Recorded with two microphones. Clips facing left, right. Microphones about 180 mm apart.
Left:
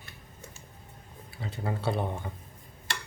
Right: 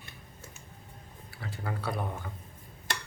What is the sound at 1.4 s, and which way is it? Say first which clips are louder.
Speech: left 4 dB; 25° left (ahead or behind).